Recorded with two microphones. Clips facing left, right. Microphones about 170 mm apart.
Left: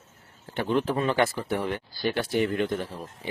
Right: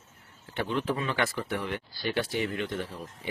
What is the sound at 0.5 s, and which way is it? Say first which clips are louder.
Speech: left 4 dB; 45° left (ahead or behind).